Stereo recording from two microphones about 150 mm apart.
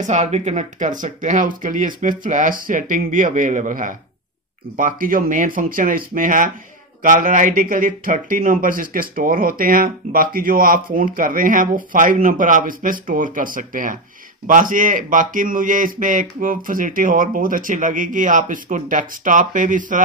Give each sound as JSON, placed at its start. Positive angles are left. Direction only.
{"t": 0.0, "sound": "speech", "side_deg": -50}